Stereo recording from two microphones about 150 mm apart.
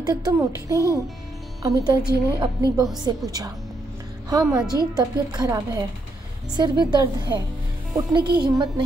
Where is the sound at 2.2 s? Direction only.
25° right (ahead or behind).